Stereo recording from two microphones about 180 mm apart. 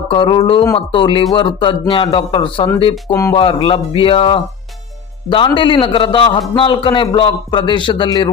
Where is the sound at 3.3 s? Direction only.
30° left (ahead or behind).